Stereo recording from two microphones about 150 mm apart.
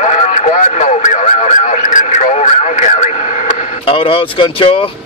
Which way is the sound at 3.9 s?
40° left (ahead or behind).